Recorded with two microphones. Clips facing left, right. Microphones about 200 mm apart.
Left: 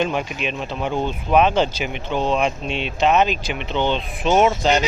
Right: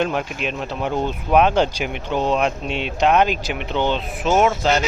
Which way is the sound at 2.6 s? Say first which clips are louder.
Even; 50° right (ahead or behind).